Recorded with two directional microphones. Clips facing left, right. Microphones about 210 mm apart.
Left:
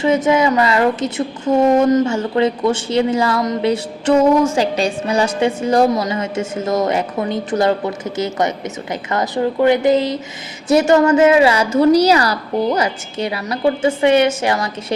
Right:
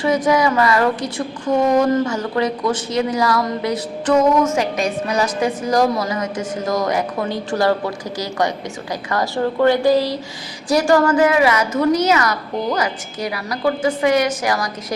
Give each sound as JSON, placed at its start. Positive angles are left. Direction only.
{"t": 0.0, "sound": "speech", "side_deg": 25}